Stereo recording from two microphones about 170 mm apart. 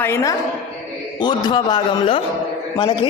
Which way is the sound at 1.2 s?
25° left (ahead or behind).